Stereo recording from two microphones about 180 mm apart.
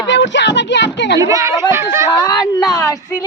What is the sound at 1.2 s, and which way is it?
Speech, 20° right (ahead or behind).